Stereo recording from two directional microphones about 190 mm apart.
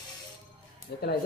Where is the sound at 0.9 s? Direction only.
60° left (ahead or behind).